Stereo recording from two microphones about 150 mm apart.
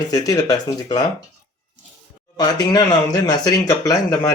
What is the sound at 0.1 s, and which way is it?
Speech, 25° left (ahead or behind).